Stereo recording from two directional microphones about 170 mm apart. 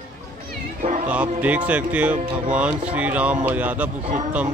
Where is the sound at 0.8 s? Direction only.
45° right (ahead or behind).